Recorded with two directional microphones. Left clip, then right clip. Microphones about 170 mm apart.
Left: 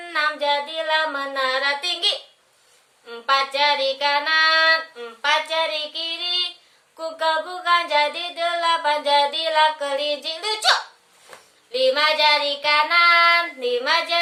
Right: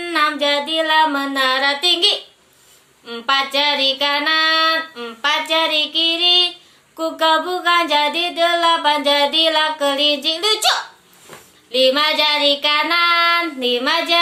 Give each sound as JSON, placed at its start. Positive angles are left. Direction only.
{"t": 0.0, "sound": "music", "side_deg": -5}